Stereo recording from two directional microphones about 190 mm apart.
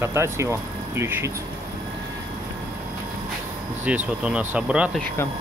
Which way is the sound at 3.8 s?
5° right (ahead or behind).